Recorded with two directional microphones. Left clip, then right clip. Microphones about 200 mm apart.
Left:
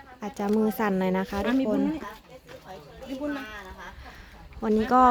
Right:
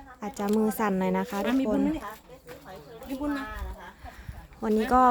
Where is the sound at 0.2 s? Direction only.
Centre (ahead or behind).